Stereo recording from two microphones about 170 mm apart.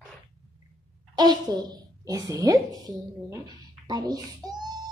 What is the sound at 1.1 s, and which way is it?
A woman's voice, 25° right (ahead or behind).